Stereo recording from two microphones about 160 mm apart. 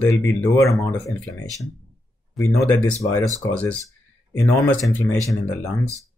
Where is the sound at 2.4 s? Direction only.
20° left (ahead or behind).